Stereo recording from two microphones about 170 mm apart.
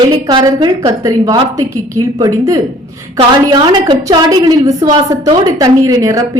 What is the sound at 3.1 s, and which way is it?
Speech, 30° right (ahead or behind).